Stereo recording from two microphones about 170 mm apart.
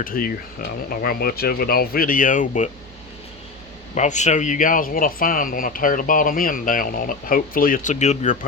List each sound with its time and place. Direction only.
0.0 s speech: 55° left (ahead or behind)
3.9 s speech: 45° left (ahead or behind)